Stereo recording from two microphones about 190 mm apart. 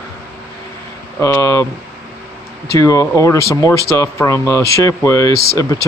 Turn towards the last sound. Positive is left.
turn(degrees=15)  # may be behind; listen again after turning